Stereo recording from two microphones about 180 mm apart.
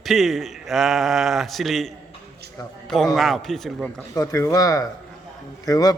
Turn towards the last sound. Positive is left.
turn(degrees=20)  # may be behind; listen again after turning